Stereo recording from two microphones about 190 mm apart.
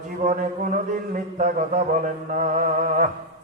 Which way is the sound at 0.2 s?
45° right (ahead or behind).